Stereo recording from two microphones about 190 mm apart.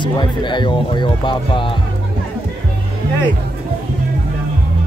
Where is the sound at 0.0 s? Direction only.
25° left (ahead or behind).